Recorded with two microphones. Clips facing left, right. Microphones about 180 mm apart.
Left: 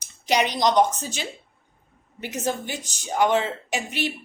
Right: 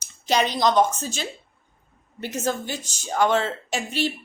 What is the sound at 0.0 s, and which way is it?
A woman's voice, 15° left (ahead or behind).